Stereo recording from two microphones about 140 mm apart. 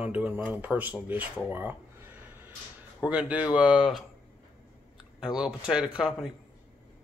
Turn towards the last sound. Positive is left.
turn(degrees=-5)  # may be behind; listen again after turning